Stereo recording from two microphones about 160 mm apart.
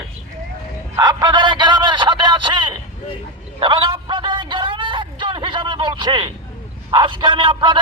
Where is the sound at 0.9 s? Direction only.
25° right (ahead or behind).